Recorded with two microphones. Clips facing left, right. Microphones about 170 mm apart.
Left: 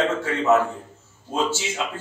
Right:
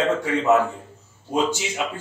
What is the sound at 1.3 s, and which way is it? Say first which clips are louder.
Speech: right 2 dB; 15° right (ahead or behind).